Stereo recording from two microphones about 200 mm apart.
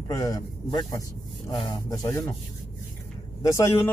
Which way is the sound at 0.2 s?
20° left (ahead or behind).